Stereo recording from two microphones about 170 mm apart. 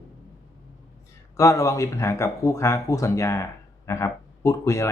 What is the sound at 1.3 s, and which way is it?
Speech, 15° left (ahead or behind).